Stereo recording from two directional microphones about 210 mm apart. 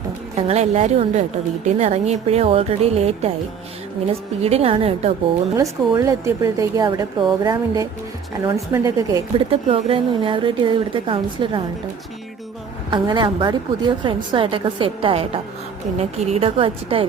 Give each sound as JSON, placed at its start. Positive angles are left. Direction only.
{"t": 0.3, "sound": "a woman's voice", "side_deg": -30}
{"t": 4.4, "sound": "a woman's voice", "side_deg": -30}
{"t": 5.5, "sound": "speech", "side_deg": -15}
{"t": 9.5, "sound": "a woman's voice", "side_deg": -25}
{"t": 12.9, "sound": "a woman's voice", "side_deg": -20}